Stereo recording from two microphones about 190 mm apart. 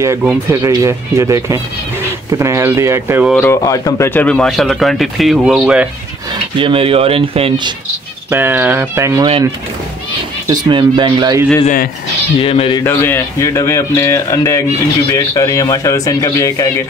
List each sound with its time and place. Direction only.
0.0 s speech: 15° right (ahead or behind)
3.3 s speech: 15° left (ahead or behind); by 5.9 s 5° right (ahead or behind)
6.6 s speech: 30° right (ahead or behind)
8.3 s speech: 10° right (ahead or behind)
10.5 s speech: 25° right (ahead or behind)
11.6 s speech: 45° left (ahead or behind)
12.4 s speech: 30° left (ahead or behind)
12.8 s speech: 10° left (ahead or behind)